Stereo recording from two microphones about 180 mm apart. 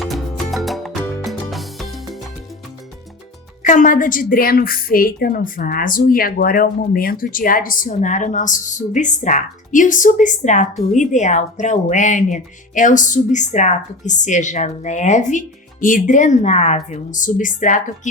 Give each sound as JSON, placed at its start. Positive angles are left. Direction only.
{"t": 0.0, "sound": "music", "side_deg": 0}
{"t": 3.6, "sound": "a woman's voice", "side_deg": 45}